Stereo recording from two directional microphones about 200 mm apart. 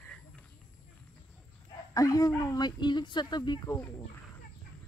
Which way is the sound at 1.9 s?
15° left (ahead or behind).